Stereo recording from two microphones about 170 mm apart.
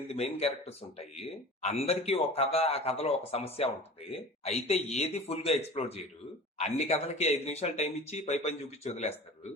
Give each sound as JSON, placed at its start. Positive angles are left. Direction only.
{"t": 0.1, "sound": "speech", "side_deg": 35}